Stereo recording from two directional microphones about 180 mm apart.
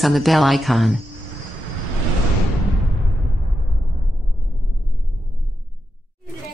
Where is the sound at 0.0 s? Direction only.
Centre (ahead or behind).